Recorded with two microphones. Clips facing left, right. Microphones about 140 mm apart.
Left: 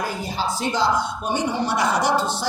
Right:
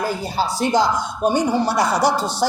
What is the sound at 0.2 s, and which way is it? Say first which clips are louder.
A woman's voice: right 4 dB; 40° right (ahead or behind).